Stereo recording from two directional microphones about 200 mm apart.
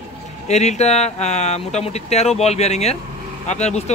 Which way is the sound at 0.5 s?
35° left (ahead or behind).